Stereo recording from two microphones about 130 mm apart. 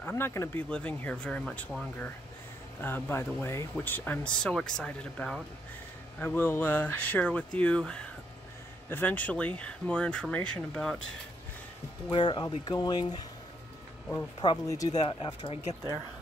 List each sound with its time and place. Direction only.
0.0 s speech: 20° left (ahead or behind)
0.7 s speech: 10° left (ahead or behind)
12.1 s speech: 35° left (ahead or behind)
14.4 s speech: 30° left (ahead or behind)